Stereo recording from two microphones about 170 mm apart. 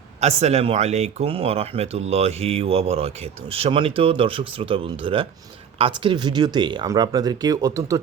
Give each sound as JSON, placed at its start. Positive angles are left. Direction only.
{"t": 0.2, "sound": "speech", "side_deg": -40}